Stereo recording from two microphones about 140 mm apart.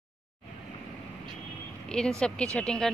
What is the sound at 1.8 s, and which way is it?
Vehicle, 5° left (ahead or behind).